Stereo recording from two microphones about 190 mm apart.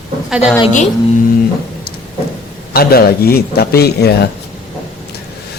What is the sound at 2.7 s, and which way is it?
Speech, 55° left (ahead or behind).